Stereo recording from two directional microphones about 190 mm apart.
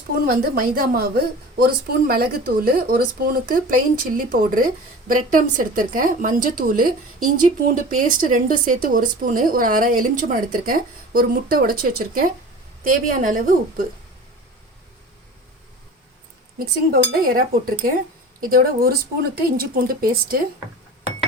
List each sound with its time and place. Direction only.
0.3 s speech: 50° right (ahead or behind)
16.6 s speech: 50° right (ahead or behind)